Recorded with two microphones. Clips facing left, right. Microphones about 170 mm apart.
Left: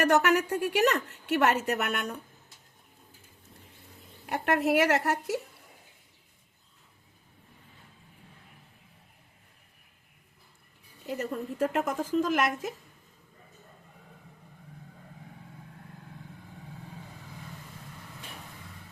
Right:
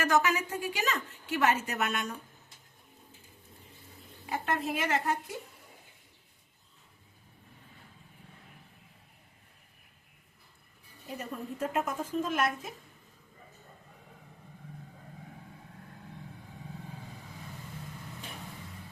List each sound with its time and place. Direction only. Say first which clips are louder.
0.0 s a woman's voice: left 4 dB; 65° left (ahead or behind)
4.3 s a woman's voice: left 6 dB; 75° left (ahead or behind)
11.0 s a woman's voice: left 6 dB; 80° left